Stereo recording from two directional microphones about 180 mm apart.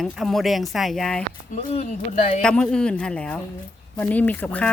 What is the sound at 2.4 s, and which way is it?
Speech, 5° left (ahead or behind).